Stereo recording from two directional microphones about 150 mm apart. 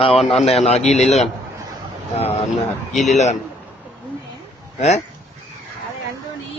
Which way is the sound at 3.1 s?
50° left (ahead or behind).